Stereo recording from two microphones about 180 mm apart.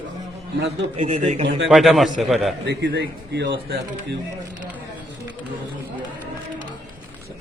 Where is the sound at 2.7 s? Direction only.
75° right (ahead or behind).